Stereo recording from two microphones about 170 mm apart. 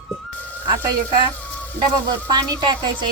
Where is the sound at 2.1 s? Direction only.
25° right (ahead or behind).